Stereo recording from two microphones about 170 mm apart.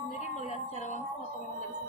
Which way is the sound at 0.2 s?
40° left (ahead or behind).